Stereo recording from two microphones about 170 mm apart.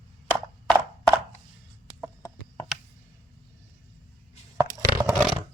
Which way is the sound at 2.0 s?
15° left (ahead or behind).